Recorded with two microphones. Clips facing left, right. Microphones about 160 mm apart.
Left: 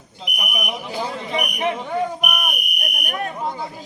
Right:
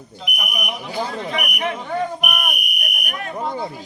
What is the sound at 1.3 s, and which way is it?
Speech, 30° left (ahead or behind).